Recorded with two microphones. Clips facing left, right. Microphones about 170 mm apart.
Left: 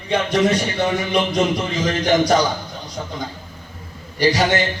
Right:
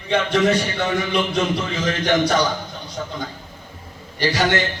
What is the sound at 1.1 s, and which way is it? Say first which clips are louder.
Speech: left 2 dB; 40° left (ahead or behind).